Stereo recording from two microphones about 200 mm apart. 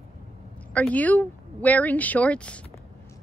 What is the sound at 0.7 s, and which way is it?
Speech, 5° left (ahead or behind).